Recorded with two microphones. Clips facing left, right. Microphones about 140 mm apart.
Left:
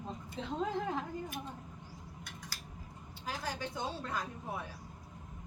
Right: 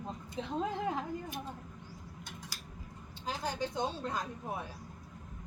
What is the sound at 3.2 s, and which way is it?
Speech, 20° right (ahead or behind).